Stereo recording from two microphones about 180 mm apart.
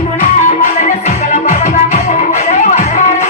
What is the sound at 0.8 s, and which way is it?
Music, 45° left (ahead or behind).